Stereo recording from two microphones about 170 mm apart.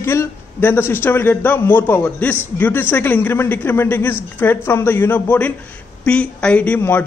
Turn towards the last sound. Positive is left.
turn(degrees=10)  # may be behind; listen again after turning